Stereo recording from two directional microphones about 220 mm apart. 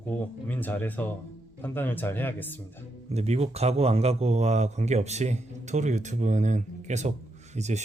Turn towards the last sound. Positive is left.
turn(degrees=-30)  # may be behind; listen again after turning